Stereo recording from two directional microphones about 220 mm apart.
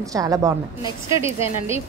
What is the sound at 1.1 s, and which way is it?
Speech, 25° left (ahead or behind).